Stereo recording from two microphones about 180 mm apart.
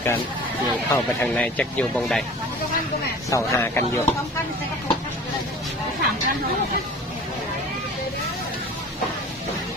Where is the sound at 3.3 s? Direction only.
15° left (ahead or behind).